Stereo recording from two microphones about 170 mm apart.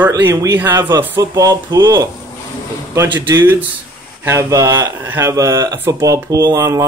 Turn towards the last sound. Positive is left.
turn(degrees=-15)  # may be behind; listen again after turning